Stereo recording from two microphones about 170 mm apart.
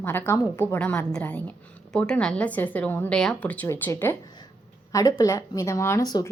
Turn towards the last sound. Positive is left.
turn(degrees=20)  # may be behind; listen again after turning